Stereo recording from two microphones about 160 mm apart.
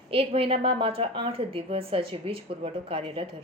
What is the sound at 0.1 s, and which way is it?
A woman's voice, 35° right (ahead or behind).